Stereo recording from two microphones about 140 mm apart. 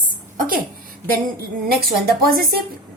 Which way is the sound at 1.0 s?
90° right.